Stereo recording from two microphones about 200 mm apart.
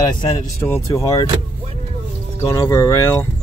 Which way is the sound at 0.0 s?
20° left (ahead or behind).